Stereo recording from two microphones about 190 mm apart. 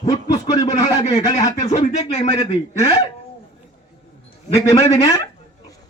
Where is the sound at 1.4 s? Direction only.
40° left (ahead or behind).